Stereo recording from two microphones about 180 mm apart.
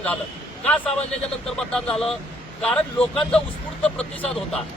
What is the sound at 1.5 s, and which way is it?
Speech, centre (ahead or behind).